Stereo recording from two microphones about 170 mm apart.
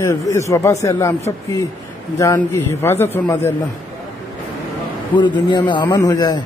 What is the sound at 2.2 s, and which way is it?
A man's voice, 15° left (ahead or behind).